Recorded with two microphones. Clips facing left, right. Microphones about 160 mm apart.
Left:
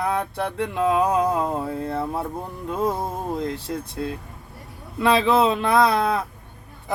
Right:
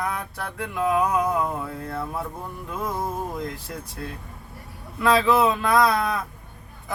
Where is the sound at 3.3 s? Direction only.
25° left (ahead or behind).